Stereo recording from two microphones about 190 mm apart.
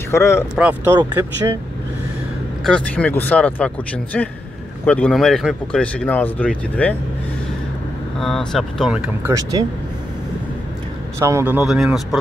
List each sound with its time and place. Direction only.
0.1 s speech: 15° left (ahead or behind)
0.6 s speech: 5° right (ahead or behind)
2.6 s speech: 5° left (ahead or behind)
8.2 s speech: centre (ahead or behind)
9.3 s speech: 20° right (ahead or behind)
11.1 s speech: 15° right (ahead or behind)